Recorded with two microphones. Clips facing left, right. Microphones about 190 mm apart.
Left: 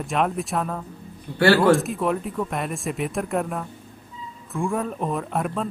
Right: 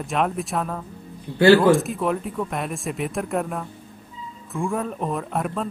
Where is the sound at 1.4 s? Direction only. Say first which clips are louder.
Right 3 dB; 20° right (ahead or behind).